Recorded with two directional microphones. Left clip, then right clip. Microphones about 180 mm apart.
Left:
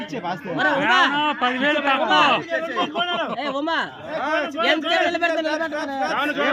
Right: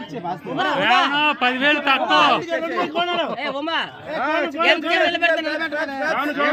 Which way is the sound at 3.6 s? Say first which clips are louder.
Even; 25° left (ahead or behind).